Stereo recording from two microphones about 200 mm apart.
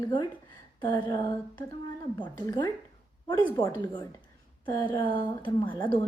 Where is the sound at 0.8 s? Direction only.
20° left (ahead or behind).